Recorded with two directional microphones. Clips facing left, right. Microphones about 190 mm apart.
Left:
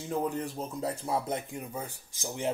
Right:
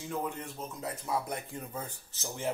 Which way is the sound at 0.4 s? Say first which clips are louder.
Left 6 dB; 35° left (ahead or behind).